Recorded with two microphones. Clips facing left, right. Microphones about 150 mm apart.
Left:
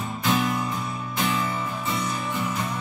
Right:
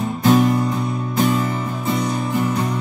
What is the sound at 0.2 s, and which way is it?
Music, 45° right (ahead or behind).